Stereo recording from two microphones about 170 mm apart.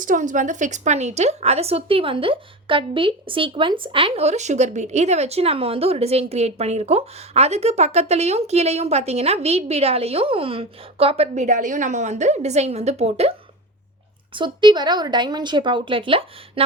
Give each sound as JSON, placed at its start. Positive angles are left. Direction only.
{"t": 0.0, "sound": "speech", "side_deg": -50}
{"t": 14.3, "sound": "a woman's voice", "side_deg": -25}